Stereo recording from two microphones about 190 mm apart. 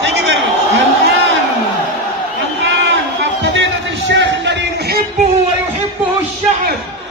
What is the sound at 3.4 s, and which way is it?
Music, 75° right (ahead or behind).